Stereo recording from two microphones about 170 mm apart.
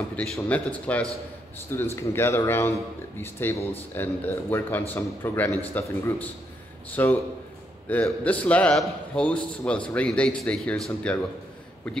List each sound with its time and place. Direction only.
0.1 s a man's voice: 10° left (ahead or behind)